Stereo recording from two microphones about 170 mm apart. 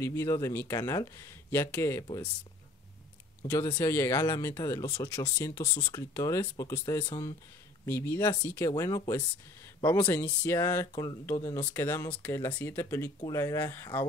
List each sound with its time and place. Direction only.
0.0 s speech: 15° left (ahead or behind)
3.4 s speech: 20° left (ahead or behind)